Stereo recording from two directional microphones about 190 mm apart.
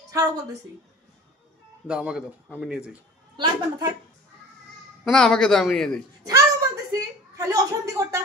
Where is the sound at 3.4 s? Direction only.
25° right (ahead or behind).